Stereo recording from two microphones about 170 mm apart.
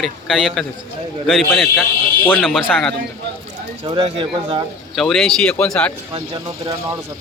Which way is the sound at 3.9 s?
30° right (ahead or behind).